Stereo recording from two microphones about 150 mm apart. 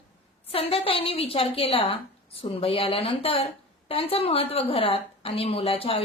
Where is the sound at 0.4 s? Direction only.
40° left (ahead or behind).